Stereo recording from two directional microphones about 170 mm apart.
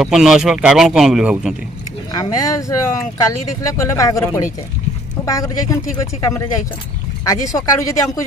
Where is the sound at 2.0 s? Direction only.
20° left (ahead or behind).